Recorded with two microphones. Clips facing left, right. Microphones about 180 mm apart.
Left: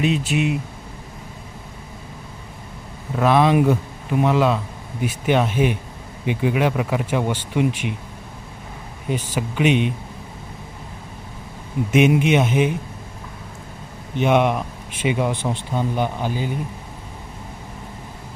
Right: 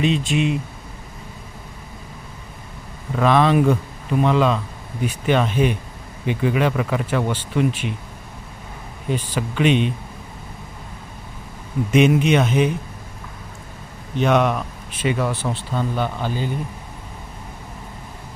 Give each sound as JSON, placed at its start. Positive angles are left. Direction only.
{"t": 0.0, "sound": "speech", "side_deg": 5}
{"t": 3.2, "sound": "speech", "side_deg": 10}
{"t": 9.0, "sound": "speech", "side_deg": 10}
{"t": 11.9, "sound": "speech", "side_deg": 10}
{"t": 14.2, "sound": "speech", "side_deg": 10}